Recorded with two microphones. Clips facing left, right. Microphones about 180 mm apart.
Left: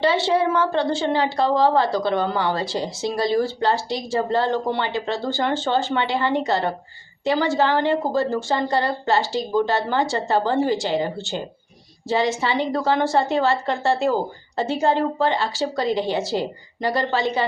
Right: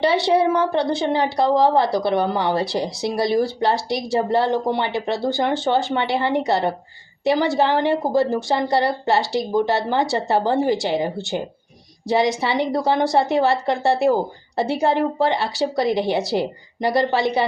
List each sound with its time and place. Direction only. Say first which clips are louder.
0.0 s a woman's voice: right 2 dB; 20° right (ahead or behind)